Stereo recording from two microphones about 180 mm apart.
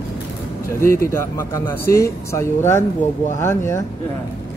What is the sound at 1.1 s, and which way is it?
Speech, 15° left (ahead or behind).